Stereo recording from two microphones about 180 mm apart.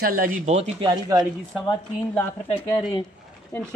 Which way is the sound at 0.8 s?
20° right (ahead or behind).